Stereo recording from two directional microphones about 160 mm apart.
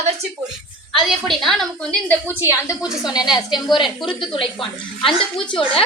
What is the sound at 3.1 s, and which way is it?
A woman's voice, 25° left (ahead or behind).